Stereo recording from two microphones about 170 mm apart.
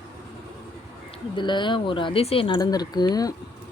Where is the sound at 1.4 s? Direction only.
25° left (ahead or behind).